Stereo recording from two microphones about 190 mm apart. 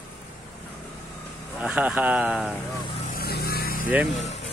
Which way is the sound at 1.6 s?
5° right (ahead or behind).